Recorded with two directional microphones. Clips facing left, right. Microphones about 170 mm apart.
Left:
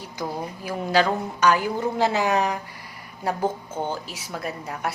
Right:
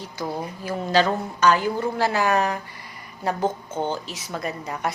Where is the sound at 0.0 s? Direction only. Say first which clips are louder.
Right 1 dB; 10° left (ahead or behind).